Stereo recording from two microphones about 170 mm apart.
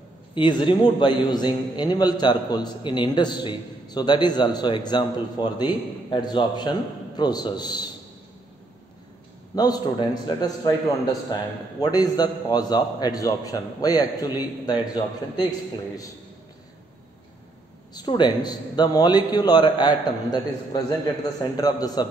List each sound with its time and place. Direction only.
0.3 s a man's voice: 30° left (ahead or behind)
9.6 s a man's voice: 25° left (ahead or behind)
17.9 s a man's voice: 25° left (ahead or behind)